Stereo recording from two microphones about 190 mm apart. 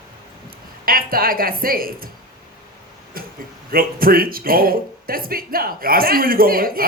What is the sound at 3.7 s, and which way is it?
Speech, 50° right (ahead or behind).